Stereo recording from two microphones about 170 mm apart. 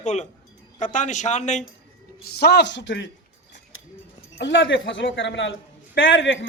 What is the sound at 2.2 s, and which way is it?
Speech, 70° left (ahead or behind).